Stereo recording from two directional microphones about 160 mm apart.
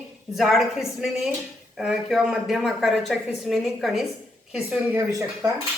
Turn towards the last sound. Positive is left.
turn(degrees=-20)  # may be behind; listen again after turning